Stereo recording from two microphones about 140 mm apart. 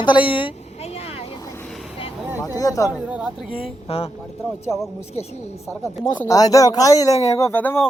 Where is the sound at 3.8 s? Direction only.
45° left (ahead or behind).